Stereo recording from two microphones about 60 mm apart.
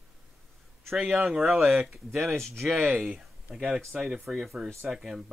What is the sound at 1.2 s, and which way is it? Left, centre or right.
Speech, centre.